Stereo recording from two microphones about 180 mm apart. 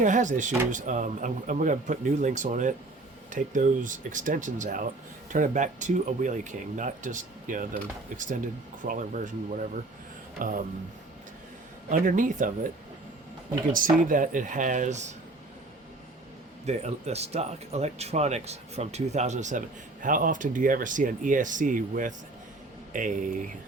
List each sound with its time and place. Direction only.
0.0 s speech: 45° right (ahead or behind)
11.9 s speech: 45° right (ahead or behind)
13.7 s speech: 50° right (ahead or behind)
16.6 s speech: 35° right (ahead or behind)